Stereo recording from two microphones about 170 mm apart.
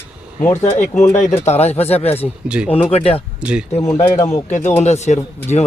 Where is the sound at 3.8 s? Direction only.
20° left (ahead or behind).